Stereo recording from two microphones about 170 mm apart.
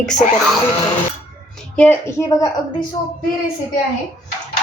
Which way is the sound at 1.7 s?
10° left (ahead or behind).